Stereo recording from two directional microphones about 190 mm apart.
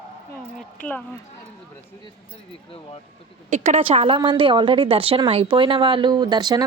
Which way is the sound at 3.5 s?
35° right (ahead or behind).